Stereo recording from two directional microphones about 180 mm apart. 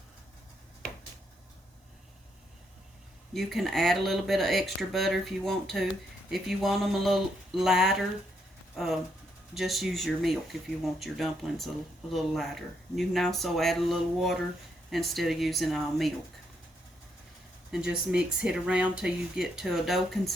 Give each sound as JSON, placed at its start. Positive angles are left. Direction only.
{"t": 3.3, "sound": "speech", "side_deg": 0}
{"t": 17.7, "sound": "speech", "side_deg": -5}